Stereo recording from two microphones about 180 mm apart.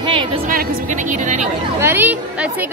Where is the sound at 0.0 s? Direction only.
30° right (ahead or behind).